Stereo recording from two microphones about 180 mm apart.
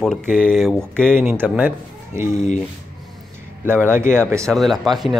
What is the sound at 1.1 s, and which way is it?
Speech, 10° right (ahead or behind).